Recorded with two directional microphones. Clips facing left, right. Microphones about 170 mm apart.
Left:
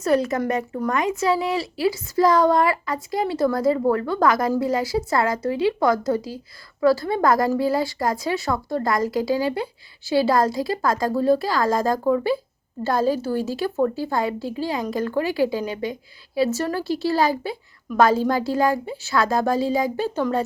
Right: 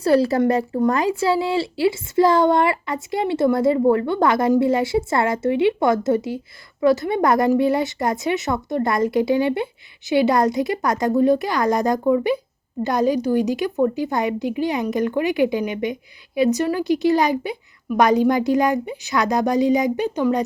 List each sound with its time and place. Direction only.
0.0 s a woman's voice: 30° right (ahead or behind); by 20.4 s 15° right (ahead or behind)